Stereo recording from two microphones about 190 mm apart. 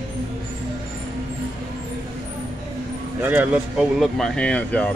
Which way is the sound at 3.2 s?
10° right (ahead or behind).